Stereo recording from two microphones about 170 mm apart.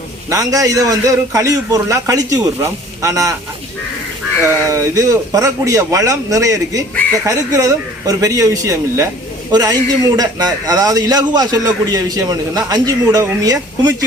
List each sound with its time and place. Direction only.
0.3 s a man's voice: 20° right (ahead or behind)
4.4 s a man's voice: 15° right (ahead or behind)